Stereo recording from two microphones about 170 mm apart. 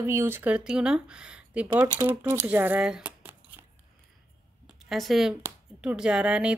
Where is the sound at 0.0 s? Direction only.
15° right (ahead or behind).